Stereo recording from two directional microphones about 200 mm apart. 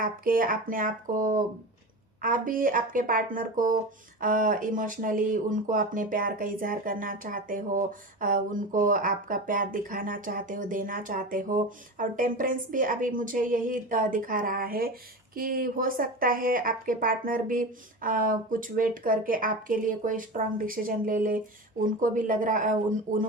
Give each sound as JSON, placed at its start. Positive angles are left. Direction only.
{"t": 0.0, "sound": "speech", "side_deg": -45}